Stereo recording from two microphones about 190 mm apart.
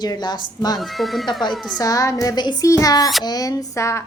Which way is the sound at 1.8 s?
20° left (ahead or behind).